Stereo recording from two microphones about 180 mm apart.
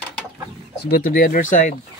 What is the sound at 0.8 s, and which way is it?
Speech, 55° left (ahead or behind).